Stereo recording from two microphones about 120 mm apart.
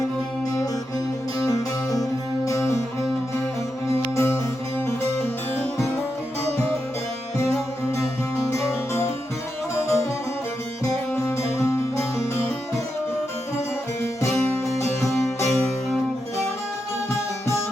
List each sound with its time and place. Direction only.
1.4 s music: 30° left (ahead or behind)
4.1 s music: 25° left (ahead or behind)
8.4 s music: 25° left (ahead or behind)
14.8 s music: 25° left (ahead or behind)